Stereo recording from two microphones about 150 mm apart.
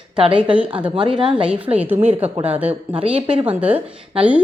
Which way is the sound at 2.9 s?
40° right (ahead or behind).